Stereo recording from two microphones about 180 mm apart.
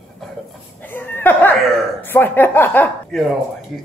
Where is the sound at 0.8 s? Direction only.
10° left (ahead or behind).